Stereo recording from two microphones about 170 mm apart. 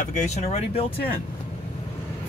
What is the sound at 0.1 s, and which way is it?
Speech, 45° left (ahead or behind).